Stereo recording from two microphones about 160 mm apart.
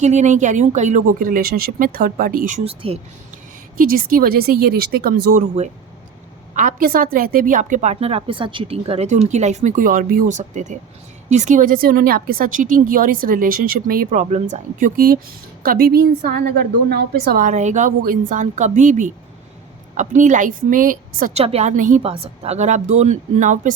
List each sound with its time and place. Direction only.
0.0 s a woman's voice: 45° right (ahead or behind)
2.6 s speech: 35° right (ahead or behind)
3.8 s speech: 60° right (ahead or behind)
5.4 s a woman's voice: 45° right (ahead or behind)
21.3 s a woman's voice: 40° right (ahead or behind)
22.0 s a woman's voice: 35° right (ahead or behind)